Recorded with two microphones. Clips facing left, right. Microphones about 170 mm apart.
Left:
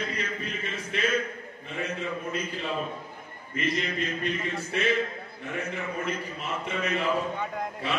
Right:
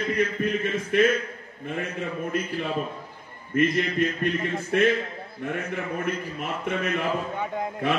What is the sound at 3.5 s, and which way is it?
Mantra, 50° right (ahead or behind).